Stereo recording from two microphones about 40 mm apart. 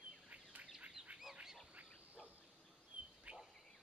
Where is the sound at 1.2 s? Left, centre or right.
Centre.